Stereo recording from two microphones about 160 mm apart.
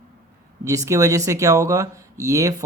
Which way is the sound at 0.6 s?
20° right (ahead or behind).